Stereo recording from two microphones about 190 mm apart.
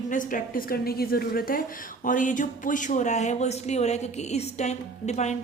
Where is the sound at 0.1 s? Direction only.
45° left (ahead or behind).